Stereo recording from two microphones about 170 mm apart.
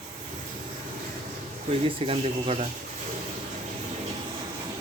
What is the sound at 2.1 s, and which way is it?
Speech, 35° right (ahead or behind).